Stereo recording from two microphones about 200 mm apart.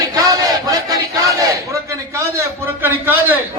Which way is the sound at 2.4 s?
10° right (ahead or behind).